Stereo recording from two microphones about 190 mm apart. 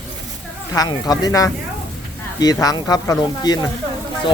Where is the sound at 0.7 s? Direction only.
20° left (ahead or behind).